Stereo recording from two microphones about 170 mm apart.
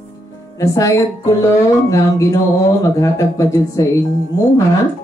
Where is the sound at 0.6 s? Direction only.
20° left (ahead or behind).